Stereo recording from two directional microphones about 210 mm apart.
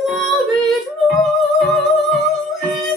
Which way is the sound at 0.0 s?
Centre (ahead or behind).